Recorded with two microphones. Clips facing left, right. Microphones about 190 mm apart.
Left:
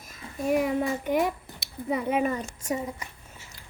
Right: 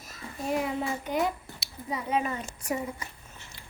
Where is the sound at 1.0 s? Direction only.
55° left (ahead or behind).